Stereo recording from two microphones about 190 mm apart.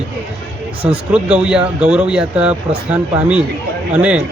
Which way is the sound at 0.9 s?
5° right (ahead or behind).